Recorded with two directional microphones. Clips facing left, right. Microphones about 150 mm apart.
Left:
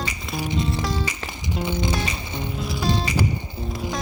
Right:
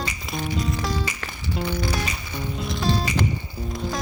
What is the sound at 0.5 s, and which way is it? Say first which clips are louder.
Music: left 2 dB; 25° left (ahead or behind).